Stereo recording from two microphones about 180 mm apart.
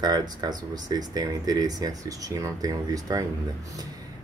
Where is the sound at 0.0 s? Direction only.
20° right (ahead or behind).